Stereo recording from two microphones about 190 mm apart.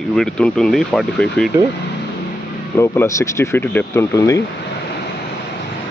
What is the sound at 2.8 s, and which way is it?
Speech, 15° left (ahead or behind).